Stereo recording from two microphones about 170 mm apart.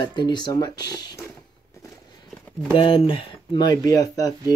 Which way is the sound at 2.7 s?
30° left (ahead or behind).